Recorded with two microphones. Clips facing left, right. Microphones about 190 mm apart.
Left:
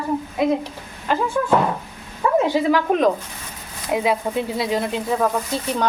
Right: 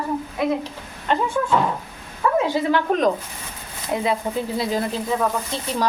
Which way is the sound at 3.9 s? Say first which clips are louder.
Left 2 dB; 5° left (ahead or behind).